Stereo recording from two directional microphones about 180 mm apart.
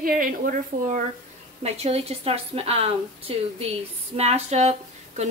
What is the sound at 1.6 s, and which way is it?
A woman's voice, 35° right (ahead or behind).